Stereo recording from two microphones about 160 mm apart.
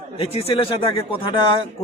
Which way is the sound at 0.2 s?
35° left (ahead or behind).